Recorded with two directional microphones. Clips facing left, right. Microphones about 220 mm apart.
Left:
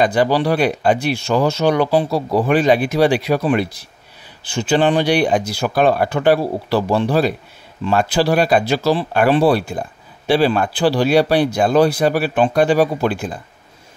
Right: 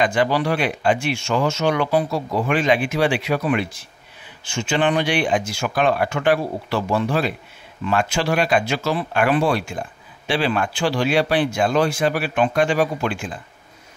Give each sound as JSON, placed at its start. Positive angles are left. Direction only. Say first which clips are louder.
{"t": 0.0, "sound": "speech", "louder": "left 4 dB", "side_deg": 35}